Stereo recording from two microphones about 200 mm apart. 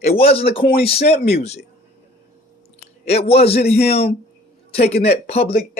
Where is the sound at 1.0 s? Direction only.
50° left (ahead or behind).